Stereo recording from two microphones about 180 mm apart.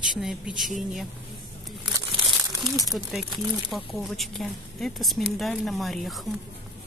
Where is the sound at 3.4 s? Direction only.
Centre (ahead or behind).